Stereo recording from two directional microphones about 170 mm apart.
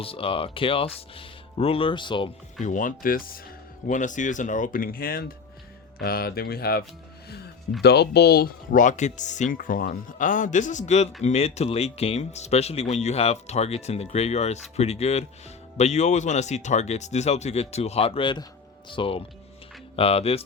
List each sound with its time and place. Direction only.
0.0 s speech: 35° left (ahead or behind)
2.6 s speech: 50° left (ahead or behind)
7.8 s speech: 75° left (ahead or behind); by 20.4 s 35° left (ahead or behind)